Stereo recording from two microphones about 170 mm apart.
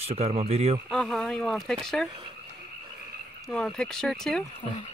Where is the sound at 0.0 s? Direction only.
35° right (ahead or behind).